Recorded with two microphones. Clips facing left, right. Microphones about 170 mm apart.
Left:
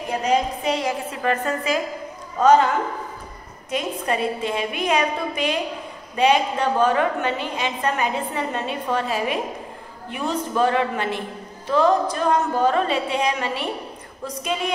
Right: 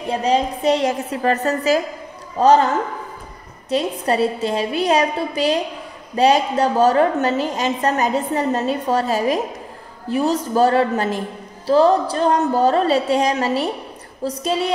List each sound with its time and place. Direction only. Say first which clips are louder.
0.2 s a man's voice: right 3 dB; 35° right (ahead or behind)
3.7 s a man's voice: right 5 dB; 35° right (ahead or behind)